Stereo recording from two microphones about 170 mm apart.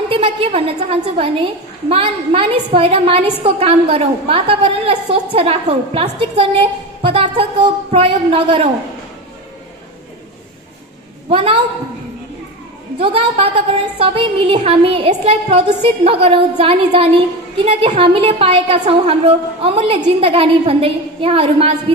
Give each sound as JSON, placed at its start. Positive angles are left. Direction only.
{"t": 0.1, "sound": "a woman's voice", "side_deg": -35}
{"t": 11.2, "sound": "a woman's voice", "side_deg": -30}
{"t": 13.0, "sound": "a woman's voice", "side_deg": -35}